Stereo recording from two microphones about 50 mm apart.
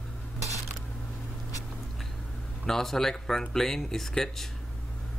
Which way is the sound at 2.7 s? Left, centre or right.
Centre.